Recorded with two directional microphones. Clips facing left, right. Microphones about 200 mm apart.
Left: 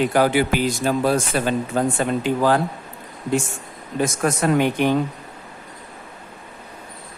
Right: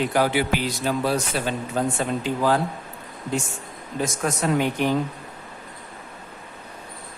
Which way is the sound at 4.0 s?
55° left (ahead or behind).